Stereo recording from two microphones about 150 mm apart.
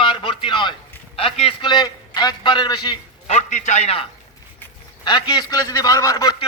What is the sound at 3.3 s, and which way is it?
Speech, 50° left (ahead or behind).